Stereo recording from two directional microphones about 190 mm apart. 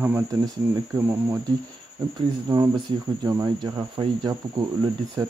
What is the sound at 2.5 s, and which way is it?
Speech, 20° right (ahead or behind).